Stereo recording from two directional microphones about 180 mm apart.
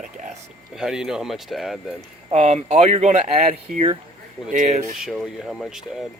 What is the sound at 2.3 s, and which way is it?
Speech, 40° right (ahead or behind).